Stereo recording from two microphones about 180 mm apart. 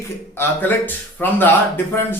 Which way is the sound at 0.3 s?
10° left (ahead or behind).